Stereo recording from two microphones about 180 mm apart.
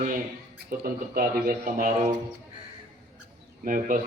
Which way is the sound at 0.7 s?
50° right (ahead or behind).